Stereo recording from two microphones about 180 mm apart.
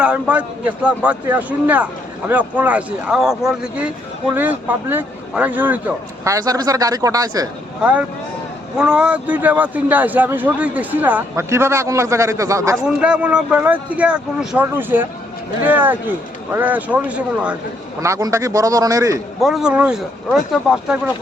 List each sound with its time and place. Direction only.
0.0 s a man's voice: 5° right (ahead or behind)
7.8 s a man's voice: 5° right (ahead or behind)
13.0 s a man's voice: 5° right (ahead or behind)
19.4 s speech: centre (ahead or behind)